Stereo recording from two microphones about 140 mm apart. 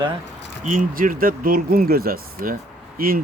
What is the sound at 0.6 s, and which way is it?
Speech, 70° right (ahead or behind).